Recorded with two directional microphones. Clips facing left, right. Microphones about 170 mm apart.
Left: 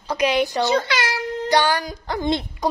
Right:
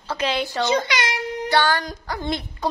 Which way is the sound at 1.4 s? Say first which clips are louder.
Left 1 dB; 15° left (ahead or behind).